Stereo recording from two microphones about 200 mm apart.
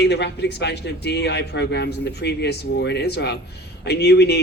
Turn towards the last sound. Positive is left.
turn(degrees=55)  # may be behind; listen again after turning